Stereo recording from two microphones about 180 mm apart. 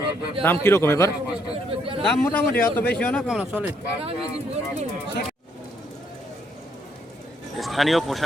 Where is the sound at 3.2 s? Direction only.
5° right (ahead or behind).